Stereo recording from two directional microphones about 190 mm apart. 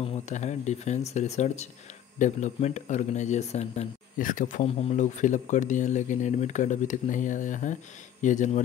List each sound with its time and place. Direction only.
0.0 s speech: 35° left (ahead or behind)